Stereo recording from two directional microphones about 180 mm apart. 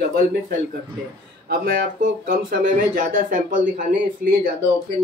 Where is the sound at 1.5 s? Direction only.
55° right (ahead or behind).